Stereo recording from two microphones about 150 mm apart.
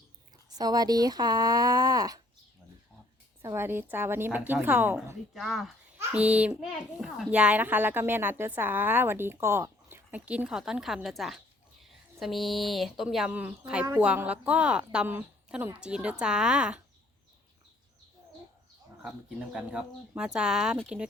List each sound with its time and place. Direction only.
0.5 s speech: 25° right (ahead or behind)
3.4 s a child's voice: 15° right (ahead or behind)
5.3 s a child's voice: centre (ahead or behind)
19.5 s speech: 5° right (ahead or behind)